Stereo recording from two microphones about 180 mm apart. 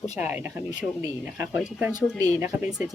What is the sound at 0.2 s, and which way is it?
Speech, 10° right (ahead or behind).